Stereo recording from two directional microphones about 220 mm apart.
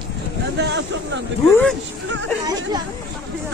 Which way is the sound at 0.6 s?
50° right (ahead or behind).